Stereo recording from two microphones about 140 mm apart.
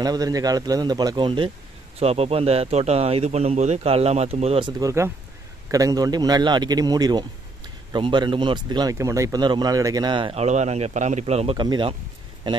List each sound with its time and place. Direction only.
0.0 s speech: 25° right (ahead or behind)
2.0 s speech: 45° right (ahead or behind)
4.6 s speech: 25° right (ahead or behind)
10.3 s speech: 55° right (ahead or behind)
11.5 s speech: 30° right (ahead or behind)